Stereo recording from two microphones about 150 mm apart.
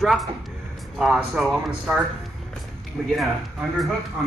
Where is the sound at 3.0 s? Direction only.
Centre (ahead or behind).